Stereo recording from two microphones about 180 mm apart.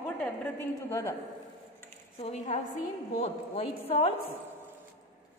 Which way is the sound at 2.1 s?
35° left (ahead or behind).